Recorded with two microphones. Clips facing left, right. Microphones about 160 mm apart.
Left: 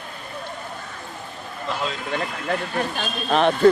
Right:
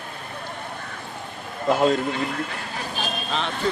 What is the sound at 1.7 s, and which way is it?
Speech, 50° right (ahead or behind).